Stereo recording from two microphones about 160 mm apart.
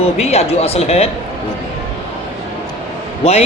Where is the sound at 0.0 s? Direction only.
40° left (ahead or behind).